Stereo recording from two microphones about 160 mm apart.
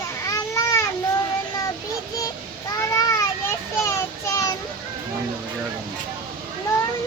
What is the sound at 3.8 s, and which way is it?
Child singing, 20° left (ahead or behind).